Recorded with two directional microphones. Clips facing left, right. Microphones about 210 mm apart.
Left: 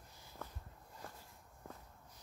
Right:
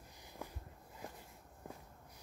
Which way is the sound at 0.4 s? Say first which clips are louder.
Right 2 dB; 15° right (ahead or behind).